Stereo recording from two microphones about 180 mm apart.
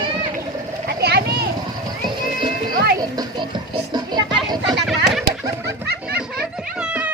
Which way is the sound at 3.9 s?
25° right (ahead or behind).